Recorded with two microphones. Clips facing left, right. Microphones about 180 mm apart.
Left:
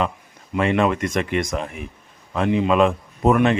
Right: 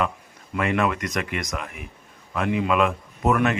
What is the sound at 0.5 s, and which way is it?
Speech, 25° left (ahead or behind).